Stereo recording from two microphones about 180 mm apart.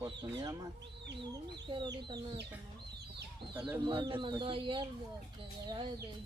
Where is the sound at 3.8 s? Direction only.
30° right (ahead or behind).